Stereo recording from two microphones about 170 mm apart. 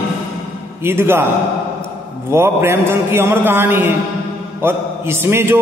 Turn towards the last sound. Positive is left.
turn(degrees=-15)  # may be behind; listen again after turning